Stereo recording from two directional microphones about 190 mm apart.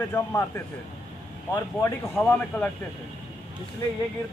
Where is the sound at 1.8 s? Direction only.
5° left (ahead or behind).